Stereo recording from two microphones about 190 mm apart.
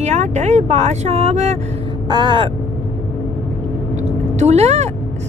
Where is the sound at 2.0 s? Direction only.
25° right (ahead or behind).